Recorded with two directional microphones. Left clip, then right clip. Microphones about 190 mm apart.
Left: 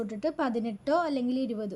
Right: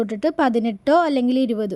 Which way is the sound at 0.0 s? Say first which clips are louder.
Right 10 dB; 40° right (ahead or behind).